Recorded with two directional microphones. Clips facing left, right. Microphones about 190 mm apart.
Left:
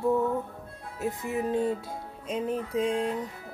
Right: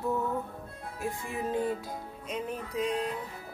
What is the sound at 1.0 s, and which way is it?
Speech, 20° left (ahead or behind).